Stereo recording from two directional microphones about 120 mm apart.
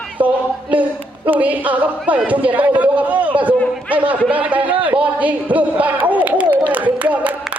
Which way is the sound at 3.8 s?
15° right (ahead or behind).